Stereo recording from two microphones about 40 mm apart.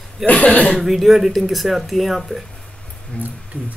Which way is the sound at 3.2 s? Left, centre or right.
Left.